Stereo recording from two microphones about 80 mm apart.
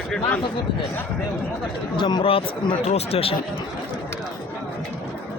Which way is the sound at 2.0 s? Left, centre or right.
Left.